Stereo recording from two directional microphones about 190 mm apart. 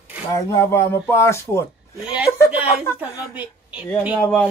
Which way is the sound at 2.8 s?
15° left (ahead or behind).